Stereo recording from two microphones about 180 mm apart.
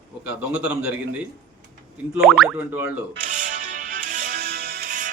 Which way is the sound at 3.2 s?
45° right (ahead or behind).